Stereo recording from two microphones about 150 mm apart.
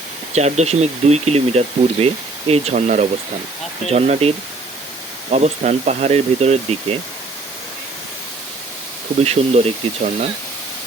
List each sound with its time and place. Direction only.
0.3 s speech: 45° right (ahead or behind)
9.2 s speech: 45° right (ahead or behind)